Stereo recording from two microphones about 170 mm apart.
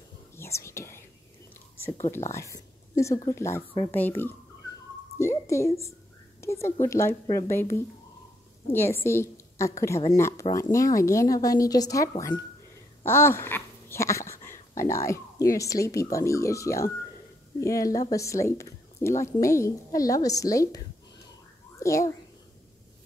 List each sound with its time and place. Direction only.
0.4 s whispering: 15° left (ahead or behind)
2.0 s a woman's voice: 15° left (ahead or behind)
5.5 s a woman's voice: 15° left (ahead or behind)